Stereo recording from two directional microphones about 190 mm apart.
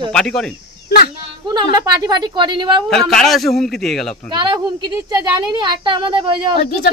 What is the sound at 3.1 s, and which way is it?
A man's voice, centre (ahead or behind).